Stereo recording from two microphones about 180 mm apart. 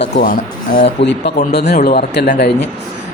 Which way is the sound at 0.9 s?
75° left (ahead or behind).